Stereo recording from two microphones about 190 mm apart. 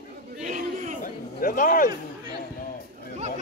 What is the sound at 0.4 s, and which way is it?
Crowd, 40° right (ahead or behind).